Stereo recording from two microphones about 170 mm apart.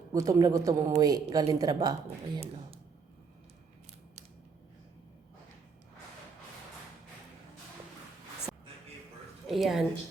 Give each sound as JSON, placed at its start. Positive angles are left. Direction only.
{"t": 0.1, "sound": "speech", "side_deg": -20}
{"t": 9.5, "sound": "a woman's voice", "side_deg": 0}